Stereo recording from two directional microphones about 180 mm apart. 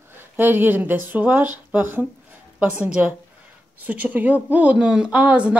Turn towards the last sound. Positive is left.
turn(degrees=-5)  # may be behind; listen again after turning